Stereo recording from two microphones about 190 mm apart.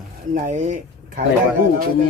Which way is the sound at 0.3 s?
40° right (ahead or behind).